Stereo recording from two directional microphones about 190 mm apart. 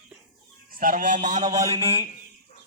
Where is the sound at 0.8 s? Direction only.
45° right (ahead or behind).